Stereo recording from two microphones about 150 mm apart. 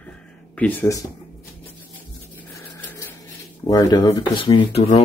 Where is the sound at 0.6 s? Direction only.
15° left (ahead or behind).